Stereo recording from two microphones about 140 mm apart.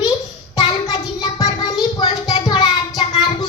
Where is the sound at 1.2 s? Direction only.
30° left (ahead or behind).